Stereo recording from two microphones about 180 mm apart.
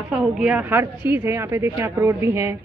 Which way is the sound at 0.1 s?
5° right (ahead or behind).